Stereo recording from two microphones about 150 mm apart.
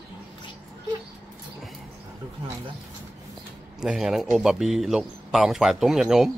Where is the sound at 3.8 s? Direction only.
5° right (ahead or behind).